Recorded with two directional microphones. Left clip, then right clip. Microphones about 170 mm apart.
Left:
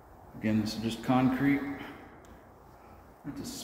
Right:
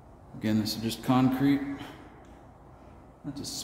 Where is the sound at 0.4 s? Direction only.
25° right (ahead or behind).